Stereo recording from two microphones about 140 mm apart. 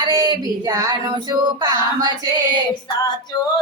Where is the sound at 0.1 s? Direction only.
25° right (ahead or behind).